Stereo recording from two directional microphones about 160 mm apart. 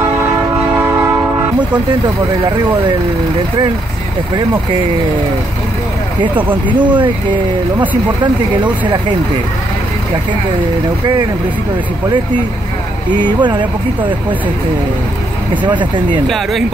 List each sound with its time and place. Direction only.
0.7 s train: 15° right (ahead or behind)
6.8 s speech: 30° right (ahead or behind)
13.4 s speech: 30° right (ahead or behind)
15.6 s speech: 30° right (ahead or behind)